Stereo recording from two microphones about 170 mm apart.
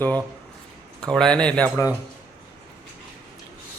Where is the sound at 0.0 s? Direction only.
10° left (ahead or behind).